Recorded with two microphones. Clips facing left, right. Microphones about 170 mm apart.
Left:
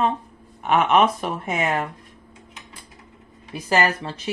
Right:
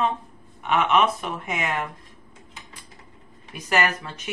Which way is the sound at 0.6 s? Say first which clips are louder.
Left 3 dB; 45° left (ahead or behind).